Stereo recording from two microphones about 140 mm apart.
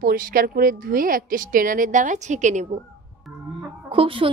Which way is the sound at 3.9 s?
40° right (ahead or behind).